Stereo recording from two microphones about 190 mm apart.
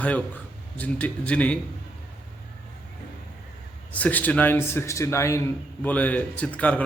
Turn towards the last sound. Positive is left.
turn(degrees=10)  # may be behind; listen again after turning